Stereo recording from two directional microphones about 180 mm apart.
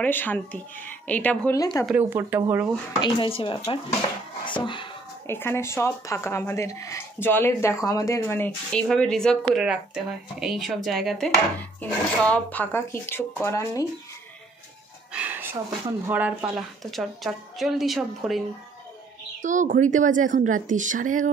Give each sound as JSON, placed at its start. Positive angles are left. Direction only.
{"t": 0.0, "sound": "speech", "side_deg": 10}
{"t": 1.5, "sound": "speech", "side_deg": 20}
{"t": 1.9, "sound": "speech", "side_deg": -10}
{"t": 3.0, "sound": "speech", "side_deg": 30}
{"t": 5.2, "sound": "speech", "side_deg": 15}
{"t": 15.1, "sound": "a sound", "side_deg": -10}
{"t": 16.1, "sound": "speech", "side_deg": -10}
{"t": 19.4, "sound": "a woman's voice", "side_deg": -45}